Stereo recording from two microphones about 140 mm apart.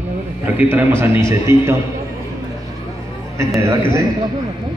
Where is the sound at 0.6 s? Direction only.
15° right (ahead or behind).